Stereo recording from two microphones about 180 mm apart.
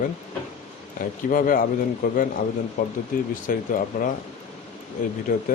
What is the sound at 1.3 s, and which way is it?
Speech, 50° left (ahead or behind).